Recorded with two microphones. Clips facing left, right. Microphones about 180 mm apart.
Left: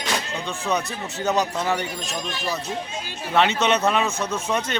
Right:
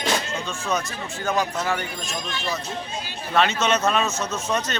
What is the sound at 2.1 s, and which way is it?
Speech, 35° left (ahead or behind).